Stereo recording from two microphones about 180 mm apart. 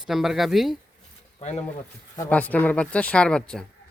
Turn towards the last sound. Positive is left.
turn(degrees=5)  # may be behind; listen again after turning